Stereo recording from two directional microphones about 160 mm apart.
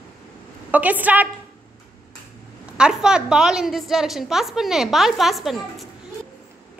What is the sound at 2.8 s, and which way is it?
A woman's voice, 5° right (ahead or behind).